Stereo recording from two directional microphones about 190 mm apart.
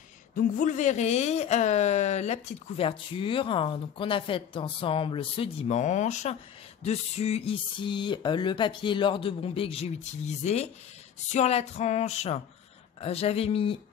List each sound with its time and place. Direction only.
0.4 s speech: 45° left (ahead or behind)
6.8 s a sound: 35° left (ahead or behind)
11.3 s speech: 35° left (ahead or behind)